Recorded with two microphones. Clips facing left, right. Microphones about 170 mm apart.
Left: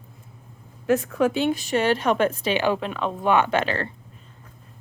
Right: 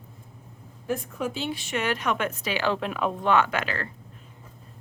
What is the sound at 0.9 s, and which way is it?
Speech, 90° left.